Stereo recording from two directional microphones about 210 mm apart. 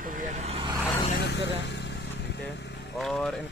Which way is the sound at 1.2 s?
55° left (ahead or behind).